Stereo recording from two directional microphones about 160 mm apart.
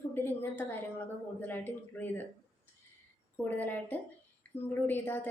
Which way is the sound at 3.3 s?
10° left (ahead or behind).